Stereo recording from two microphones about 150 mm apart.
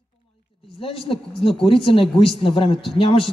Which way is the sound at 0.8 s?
40° left (ahead or behind).